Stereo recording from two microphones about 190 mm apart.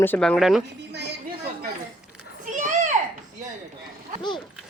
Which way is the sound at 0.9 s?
60° right (ahead or behind).